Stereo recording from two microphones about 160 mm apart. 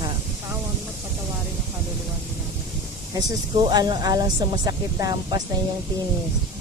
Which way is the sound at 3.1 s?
25° right (ahead or behind).